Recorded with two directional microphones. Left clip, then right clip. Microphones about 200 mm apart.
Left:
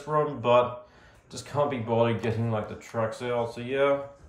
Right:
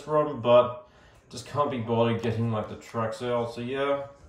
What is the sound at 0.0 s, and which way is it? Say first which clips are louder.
Speech: right 1 dB; 10° right (ahead or behind).